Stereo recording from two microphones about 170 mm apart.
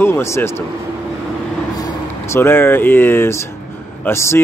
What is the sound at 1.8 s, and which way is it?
Speech, 15° left (ahead or behind).